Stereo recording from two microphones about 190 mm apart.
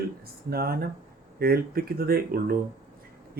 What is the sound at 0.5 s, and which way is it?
Speech, 55° right (ahead or behind).